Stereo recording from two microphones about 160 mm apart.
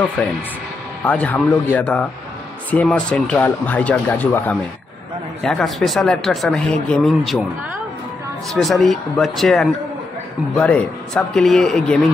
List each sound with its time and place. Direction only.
0.2 s speech: 10° left (ahead or behind)
8.5 s speech: centre (ahead or behind)